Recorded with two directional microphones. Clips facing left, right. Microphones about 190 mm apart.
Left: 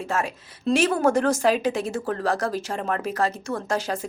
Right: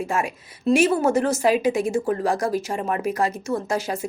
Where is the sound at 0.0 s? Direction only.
10° right (ahead or behind).